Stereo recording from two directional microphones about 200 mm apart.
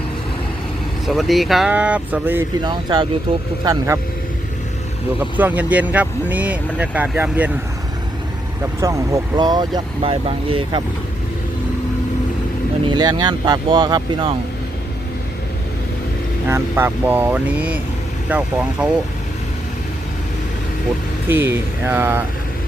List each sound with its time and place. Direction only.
1.0 s speech: centre (ahead or behind)
2.6 s speech: 20° right (ahead or behind)
5.4 s speech: 10° right (ahead or behind)
8.8 s speech: 15° right (ahead or behind)
12.9 s speech: 20° right (ahead or behind)
16.5 s speech: 10° right (ahead or behind)
21.2 s speech: 10° right (ahead or behind)